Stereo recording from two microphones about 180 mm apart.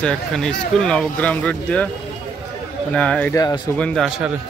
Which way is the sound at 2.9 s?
5° left (ahead or behind).